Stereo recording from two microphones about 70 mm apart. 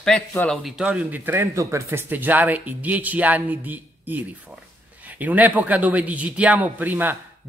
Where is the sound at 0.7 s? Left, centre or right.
Centre.